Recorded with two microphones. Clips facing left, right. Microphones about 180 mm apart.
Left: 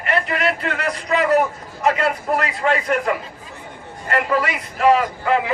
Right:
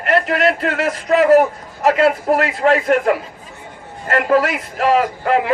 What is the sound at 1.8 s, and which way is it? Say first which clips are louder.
Speech: right 5 dB; centre (ahead or behind).